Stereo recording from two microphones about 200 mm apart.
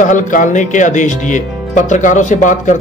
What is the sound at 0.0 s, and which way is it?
Speech, 40° left (ahead or behind).